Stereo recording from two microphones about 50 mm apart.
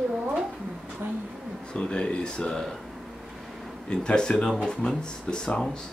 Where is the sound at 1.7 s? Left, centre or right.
Centre.